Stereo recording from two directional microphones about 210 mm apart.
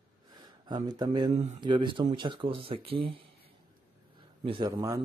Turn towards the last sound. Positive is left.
turn(degrees=-15)  # may be behind; listen again after turning